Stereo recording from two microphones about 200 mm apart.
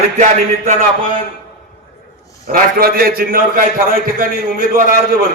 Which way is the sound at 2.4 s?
45° right (ahead or behind).